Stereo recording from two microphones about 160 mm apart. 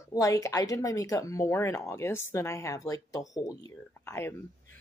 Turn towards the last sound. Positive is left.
turn(degrees=15)  # may be behind; listen again after turning